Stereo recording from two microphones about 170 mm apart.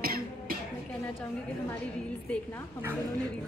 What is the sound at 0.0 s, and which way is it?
Cough, 60° right (ahead or behind).